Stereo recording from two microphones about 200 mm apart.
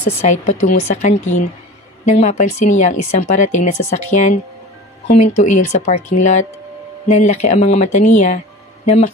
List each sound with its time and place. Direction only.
0.2 s speech: 35° left (ahead or behind)